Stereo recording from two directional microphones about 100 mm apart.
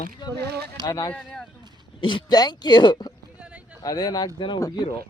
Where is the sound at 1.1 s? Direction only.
5° left (ahead or behind).